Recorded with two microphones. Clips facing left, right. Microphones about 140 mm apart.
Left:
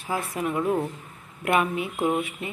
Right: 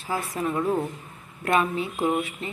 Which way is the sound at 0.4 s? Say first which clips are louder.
Even; 10° left (ahead or behind).